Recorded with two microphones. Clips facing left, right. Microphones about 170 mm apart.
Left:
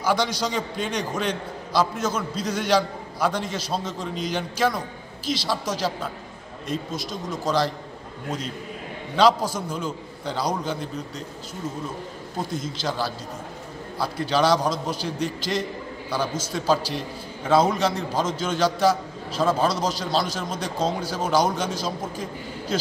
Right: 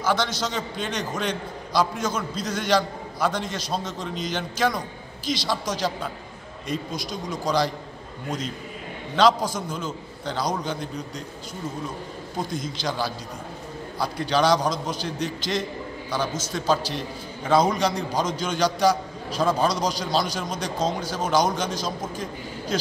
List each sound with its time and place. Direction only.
0.0 s a man's voice: 10° left (ahead or behind)
9.1 s a man's voice: 5° left (ahead or behind)
12.4 s a man's voice: 5° left (ahead or behind)